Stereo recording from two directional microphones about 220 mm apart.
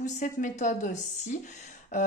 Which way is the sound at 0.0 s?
35° left (ahead or behind).